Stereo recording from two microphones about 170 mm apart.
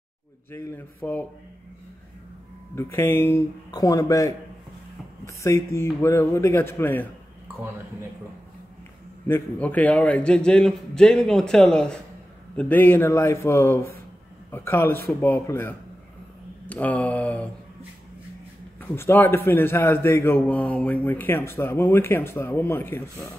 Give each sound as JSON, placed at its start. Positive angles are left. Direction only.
{"t": 0.5, "sound": "a man's voice", "side_deg": 15}
{"t": 2.7, "sound": "a man's voice", "side_deg": 15}
{"t": 9.3, "sound": "a man's voice", "side_deg": 10}
{"t": 18.8, "sound": "a man's voice", "side_deg": 10}